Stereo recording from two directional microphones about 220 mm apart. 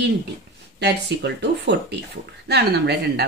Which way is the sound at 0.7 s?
50° right (ahead or behind).